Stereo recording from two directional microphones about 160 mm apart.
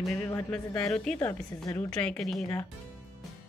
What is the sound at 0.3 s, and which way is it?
Speech, 15° left (ahead or behind).